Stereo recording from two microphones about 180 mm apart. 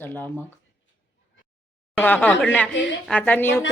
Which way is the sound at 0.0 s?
10° left (ahead or behind).